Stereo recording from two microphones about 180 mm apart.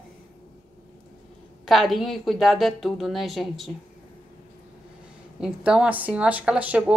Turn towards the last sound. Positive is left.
turn(degrees=-5)  # may be behind; listen again after turning